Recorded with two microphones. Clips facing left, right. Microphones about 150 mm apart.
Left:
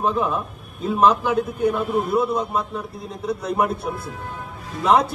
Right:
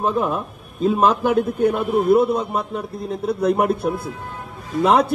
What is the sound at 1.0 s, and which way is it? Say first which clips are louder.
A man's voice: left 1 dB; 55° right (ahead or behind).